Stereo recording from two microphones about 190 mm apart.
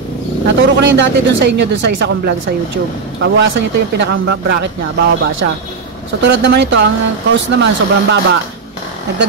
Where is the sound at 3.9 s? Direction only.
65° right (ahead or behind).